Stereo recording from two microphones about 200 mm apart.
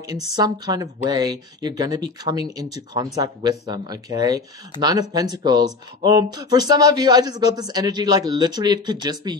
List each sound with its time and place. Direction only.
0.4 s speech: 20° right (ahead or behind)